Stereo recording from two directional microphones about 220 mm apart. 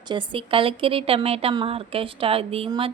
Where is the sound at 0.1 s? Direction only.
20° right (ahead or behind).